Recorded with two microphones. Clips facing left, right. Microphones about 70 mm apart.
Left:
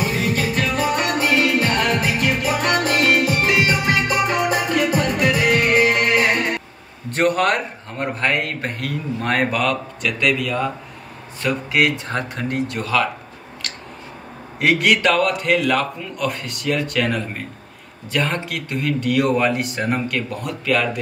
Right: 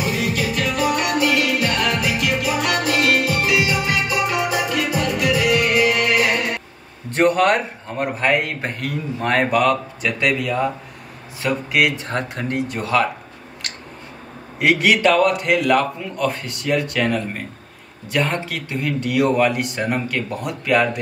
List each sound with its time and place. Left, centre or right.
0.0 s music: left
7.2 s a man's voice: centre
14.7 s a man's voice: centre